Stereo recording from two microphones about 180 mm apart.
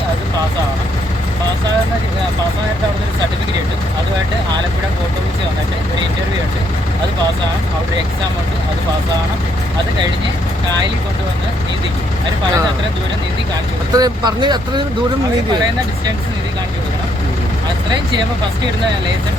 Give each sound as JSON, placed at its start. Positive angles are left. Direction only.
{"t": 13.9, "sound": "speech", "side_deg": -20}